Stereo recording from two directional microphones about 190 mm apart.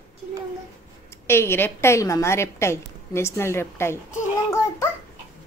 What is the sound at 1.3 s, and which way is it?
A woman's voice, 10° left (ahead or behind).